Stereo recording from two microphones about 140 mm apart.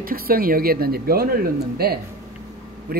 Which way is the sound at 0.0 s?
90° right.